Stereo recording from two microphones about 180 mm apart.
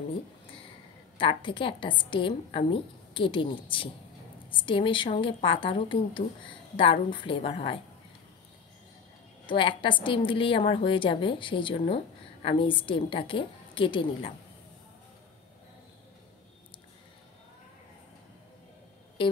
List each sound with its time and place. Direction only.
1.1 s a woman's voice: 25° left (ahead or behind)
9.5 s a woman's voice: 30° left (ahead or behind)